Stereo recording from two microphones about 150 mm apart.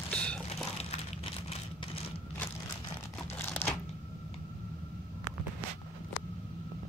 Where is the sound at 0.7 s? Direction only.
45° left (ahead or behind).